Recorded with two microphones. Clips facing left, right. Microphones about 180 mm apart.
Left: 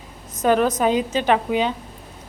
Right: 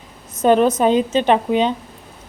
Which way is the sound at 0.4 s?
25° right (ahead or behind).